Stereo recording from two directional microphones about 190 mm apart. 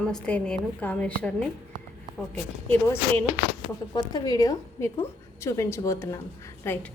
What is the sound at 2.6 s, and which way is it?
A woman's voice, 10° left (ahead or behind).